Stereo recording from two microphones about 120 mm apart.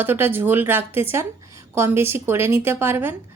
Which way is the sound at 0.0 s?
15° right (ahead or behind).